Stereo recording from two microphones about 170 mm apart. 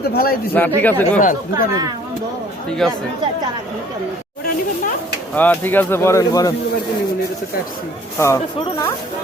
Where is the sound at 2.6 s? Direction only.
5° left (ahead or behind).